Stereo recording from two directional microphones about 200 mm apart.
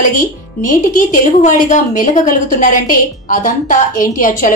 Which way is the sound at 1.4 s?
40° left (ahead or behind).